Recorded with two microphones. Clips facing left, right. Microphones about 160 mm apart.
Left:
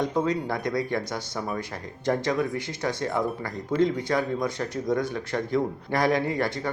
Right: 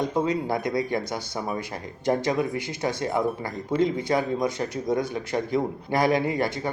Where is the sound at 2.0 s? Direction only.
20° right (ahead or behind).